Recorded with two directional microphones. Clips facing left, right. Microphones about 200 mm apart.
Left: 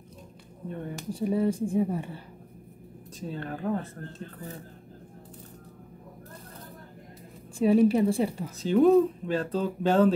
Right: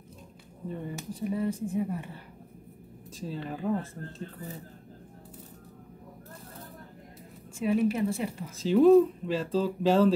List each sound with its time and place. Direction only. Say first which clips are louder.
1.2 s a woman's voice: left 5 dB; 30° left (ahead or behind)
3.2 s speech: left 1 dB; centre (ahead or behind)
7.5 s a woman's voice: left 5 dB; 35° left (ahead or behind)
8.5 s speech: right 1 dB; centre (ahead or behind)